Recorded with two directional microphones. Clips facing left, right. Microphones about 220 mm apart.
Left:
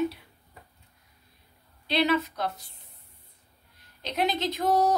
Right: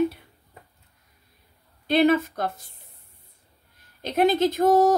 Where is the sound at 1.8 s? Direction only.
50° right (ahead or behind).